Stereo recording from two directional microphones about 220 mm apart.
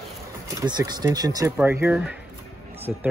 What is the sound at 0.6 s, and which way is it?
Speech, 20° right (ahead or behind).